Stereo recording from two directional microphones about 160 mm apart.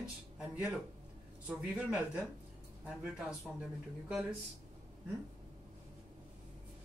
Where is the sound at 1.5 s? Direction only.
10° right (ahead or behind).